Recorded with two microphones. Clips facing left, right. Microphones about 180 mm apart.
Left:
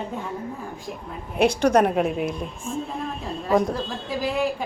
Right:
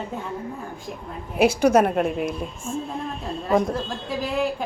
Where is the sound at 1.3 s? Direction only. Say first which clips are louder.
Right 1 dB; 5° right (ahead or behind).